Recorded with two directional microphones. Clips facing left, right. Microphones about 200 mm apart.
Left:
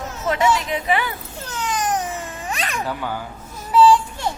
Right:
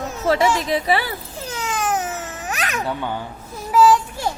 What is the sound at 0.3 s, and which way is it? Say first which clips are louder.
Speech: right 2 dB; 35° right (ahead or behind).